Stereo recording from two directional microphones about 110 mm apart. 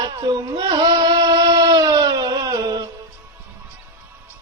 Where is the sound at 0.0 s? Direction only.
40° right (ahead or behind).